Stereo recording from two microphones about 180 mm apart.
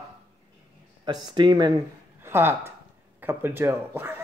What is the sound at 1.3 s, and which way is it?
Speech, 25° right (ahead or behind).